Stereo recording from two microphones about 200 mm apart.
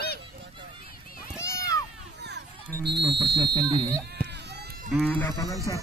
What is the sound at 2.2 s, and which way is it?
Music, 60° right (ahead or behind).